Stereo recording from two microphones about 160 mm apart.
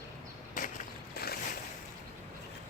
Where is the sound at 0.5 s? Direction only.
60° left (ahead or behind).